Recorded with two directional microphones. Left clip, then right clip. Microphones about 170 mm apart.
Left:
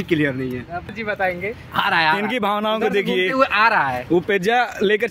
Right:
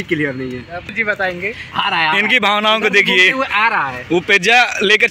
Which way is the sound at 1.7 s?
5° left (ahead or behind).